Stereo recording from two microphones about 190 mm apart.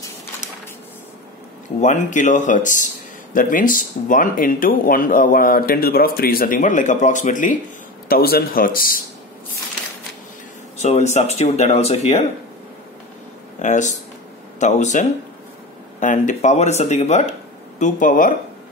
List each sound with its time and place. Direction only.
1.8 s speech: 40° left (ahead or behind)
8.1 s speech: 55° left (ahead or behind)
10.8 s speech: 35° left (ahead or behind)
13.6 s speech: 40° left (ahead or behind)